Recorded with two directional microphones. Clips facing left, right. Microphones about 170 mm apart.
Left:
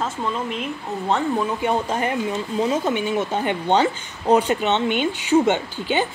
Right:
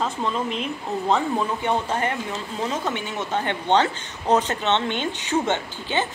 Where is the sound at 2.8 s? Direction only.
10° left (ahead or behind).